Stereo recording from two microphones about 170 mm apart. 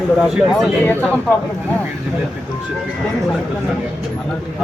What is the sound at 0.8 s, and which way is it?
Speech, 10° left (ahead or behind).